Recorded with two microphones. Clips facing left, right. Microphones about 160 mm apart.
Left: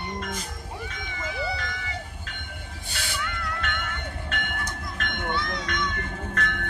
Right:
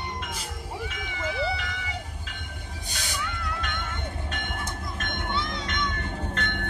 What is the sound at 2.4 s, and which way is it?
Cat, 15° right (ahead or behind).